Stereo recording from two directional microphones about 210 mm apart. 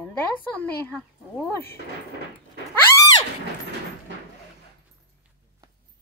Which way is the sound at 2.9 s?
20° left (ahead or behind).